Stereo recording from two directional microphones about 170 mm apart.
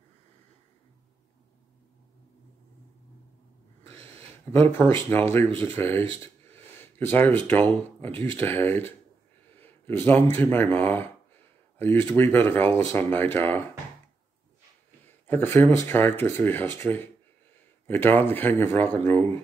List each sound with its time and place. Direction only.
3.8 s snort: 35° right (ahead or behind)
4.5 s speech: 10° left (ahead or behind)
9.6 s a sound: 10° left (ahead or behind)
10.3 s speech: 10° left (ahead or behind)
15.2 s speech: 10° left (ahead or behind)